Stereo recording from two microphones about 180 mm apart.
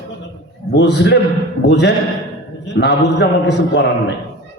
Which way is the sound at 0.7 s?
75° left (ahead or behind).